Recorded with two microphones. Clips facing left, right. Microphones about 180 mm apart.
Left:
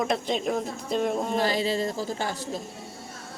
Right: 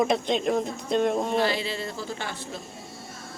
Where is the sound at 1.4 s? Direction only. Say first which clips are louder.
Left 1 dB; 40° left (ahead or behind).